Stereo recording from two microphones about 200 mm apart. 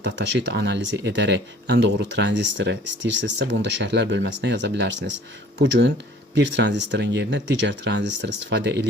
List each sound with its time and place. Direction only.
0.0 s speech: 60° right (ahead or behind)
6.3 s speech: 60° right (ahead or behind)